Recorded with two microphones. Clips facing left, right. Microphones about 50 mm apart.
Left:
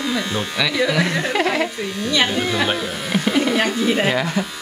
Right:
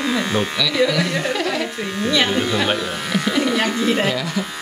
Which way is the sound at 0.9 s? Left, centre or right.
Left.